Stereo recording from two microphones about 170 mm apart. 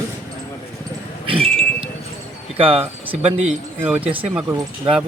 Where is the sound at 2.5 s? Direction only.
35° right (ahead or behind).